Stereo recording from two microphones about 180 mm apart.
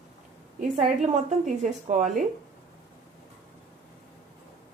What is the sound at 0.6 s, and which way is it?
A woman's voice, 40° right (ahead or behind).